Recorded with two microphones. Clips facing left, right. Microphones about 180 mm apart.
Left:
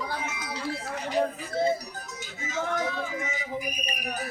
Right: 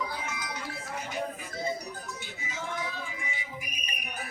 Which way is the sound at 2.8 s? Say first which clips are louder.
Left 7 dB; 60° left (ahead or behind).